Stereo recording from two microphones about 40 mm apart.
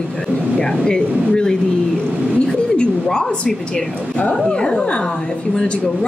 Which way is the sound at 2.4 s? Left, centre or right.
Left.